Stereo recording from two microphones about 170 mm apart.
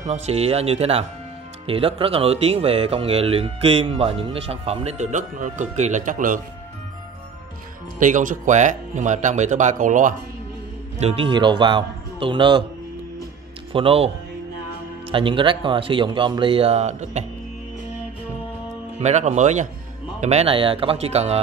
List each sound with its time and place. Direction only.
0.0 s speech: 40° right (ahead or behind)
8.0 s speech: 50° right (ahead or behind)
11.0 s a man's voice: 35° right (ahead or behind)
13.7 s speech: 35° right (ahead or behind)
18.9 s speech: 40° right (ahead or behind)